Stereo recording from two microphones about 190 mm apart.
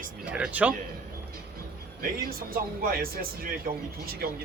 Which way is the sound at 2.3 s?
50° right (ahead or behind).